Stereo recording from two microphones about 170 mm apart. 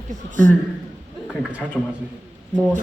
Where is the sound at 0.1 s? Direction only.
50° right (ahead or behind).